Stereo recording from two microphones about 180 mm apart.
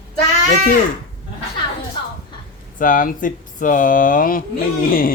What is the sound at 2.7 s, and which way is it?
Speech, 50° left (ahead or behind).